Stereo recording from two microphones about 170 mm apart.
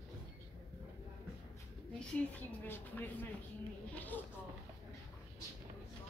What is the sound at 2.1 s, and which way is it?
Speech, 10° left (ahead or behind).